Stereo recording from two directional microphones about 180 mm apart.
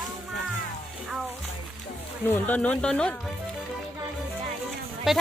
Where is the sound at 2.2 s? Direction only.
10° left (ahead or behind).